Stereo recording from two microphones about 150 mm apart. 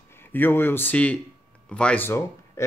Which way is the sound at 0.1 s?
15° left (ahead or behind).